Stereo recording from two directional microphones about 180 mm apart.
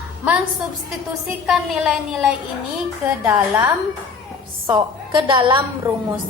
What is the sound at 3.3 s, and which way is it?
Speech, 10° right (ahead or behind).